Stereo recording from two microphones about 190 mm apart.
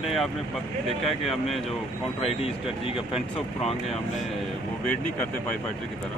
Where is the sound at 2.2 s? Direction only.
30° left (ahead or behind).